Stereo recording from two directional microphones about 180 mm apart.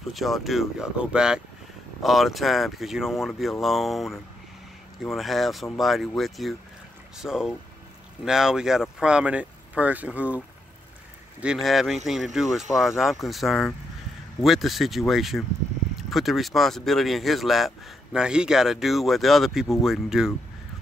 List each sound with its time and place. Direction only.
0.1 s speech: centre (ahead or behind)
11.4 s speech: centre (ahead or behind)